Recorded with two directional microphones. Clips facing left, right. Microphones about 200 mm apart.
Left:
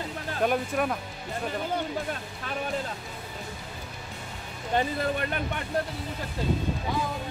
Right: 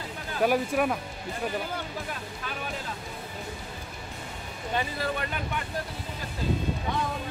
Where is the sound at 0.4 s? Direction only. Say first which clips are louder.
Right 2 dB; 5° right (ahead or behind).